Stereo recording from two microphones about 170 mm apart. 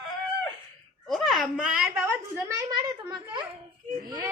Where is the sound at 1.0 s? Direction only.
Centre (ahead or behind).